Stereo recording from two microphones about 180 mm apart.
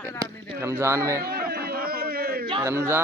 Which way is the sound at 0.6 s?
15° right (ahead or behind).